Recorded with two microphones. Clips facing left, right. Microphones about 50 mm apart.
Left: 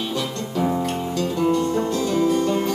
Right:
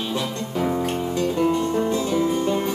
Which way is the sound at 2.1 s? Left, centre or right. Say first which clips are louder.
Left 4 dB; centre.